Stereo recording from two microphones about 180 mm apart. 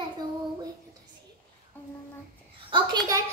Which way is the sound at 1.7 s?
10° left (ahead or behind).